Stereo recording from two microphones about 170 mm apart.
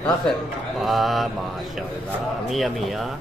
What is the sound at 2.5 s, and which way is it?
Speech, centre (ahead or behind).